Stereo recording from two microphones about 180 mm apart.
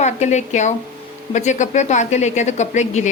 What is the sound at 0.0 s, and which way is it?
A woman's voice, 40° left (ahead or behind).